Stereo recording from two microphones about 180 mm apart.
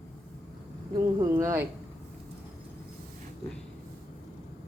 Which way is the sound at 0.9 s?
15° right (ahead or behind).